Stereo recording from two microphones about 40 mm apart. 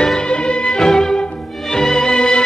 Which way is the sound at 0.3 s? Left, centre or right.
Left.